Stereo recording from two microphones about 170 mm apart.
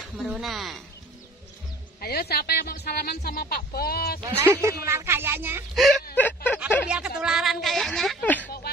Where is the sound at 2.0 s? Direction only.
65° left (ahead or behind).